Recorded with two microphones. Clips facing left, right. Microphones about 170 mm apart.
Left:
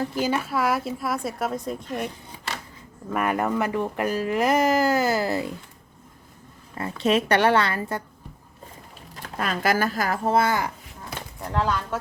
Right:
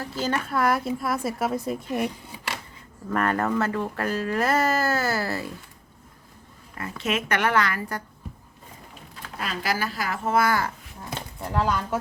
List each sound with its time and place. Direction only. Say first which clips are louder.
0.0 s a woman's voice: left 3 dB; 15° left (ahead or behind); by 2.1 s 5° right (ahead or behind)
3.1 s speech: even; 10° left (ahead or behind)
7.0 s a woman's voice: left 5 dB; 30° left (ahead or behind)
9.2 s speech: left 5 dB; 50° left (ahead or behind)
10.3 s speech: right 1 dB; 20° left (ahead or behind)
11.3 s speech: even; 5° right (ahead or behind)